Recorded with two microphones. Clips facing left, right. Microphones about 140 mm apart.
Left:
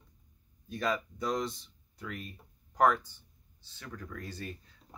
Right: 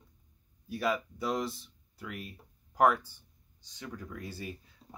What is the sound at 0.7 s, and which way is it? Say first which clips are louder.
Speech: right 1 dB; 10° right (ahead or behind).